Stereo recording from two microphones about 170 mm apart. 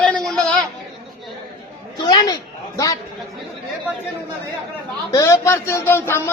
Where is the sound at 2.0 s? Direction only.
25° left (ahead or behind).